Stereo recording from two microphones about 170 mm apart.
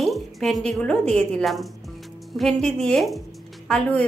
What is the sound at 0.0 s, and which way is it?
A woman's voice, centre (ahead or behind).